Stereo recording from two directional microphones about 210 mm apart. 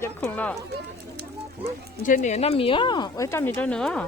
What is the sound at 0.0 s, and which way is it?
Speech, 10° left (ahead or behind).